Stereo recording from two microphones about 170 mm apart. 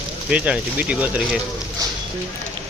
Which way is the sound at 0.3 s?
5° right (ahead or behind).